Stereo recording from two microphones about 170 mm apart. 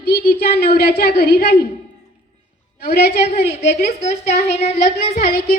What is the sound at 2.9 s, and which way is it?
Speech, 75° left (ahead or behind).